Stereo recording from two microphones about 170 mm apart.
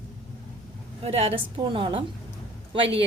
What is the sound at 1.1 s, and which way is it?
A woman's voice, 35° right (ahead or behind).